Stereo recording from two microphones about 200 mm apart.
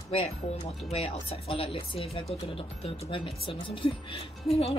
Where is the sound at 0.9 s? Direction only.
30° left (ahead or behind).